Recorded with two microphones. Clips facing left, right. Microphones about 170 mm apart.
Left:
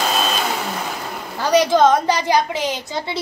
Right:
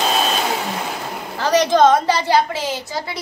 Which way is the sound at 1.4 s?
10° left (ahead or behind).